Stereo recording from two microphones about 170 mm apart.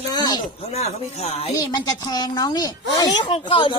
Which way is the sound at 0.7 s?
40° left (ahead or behind).